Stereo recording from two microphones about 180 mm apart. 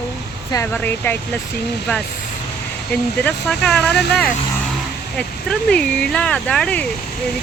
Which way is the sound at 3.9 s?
65° left (ahead or behind).